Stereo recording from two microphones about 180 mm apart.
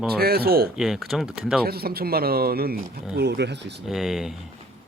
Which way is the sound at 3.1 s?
70° right (ahead or behind).